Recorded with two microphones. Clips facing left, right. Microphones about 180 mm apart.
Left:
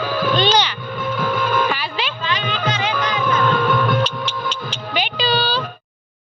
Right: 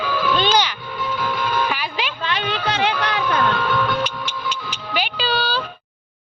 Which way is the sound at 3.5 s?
45° left (ahead or behind).